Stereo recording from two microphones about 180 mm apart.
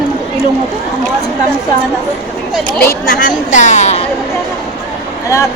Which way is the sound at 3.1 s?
50° left (ahead or behind).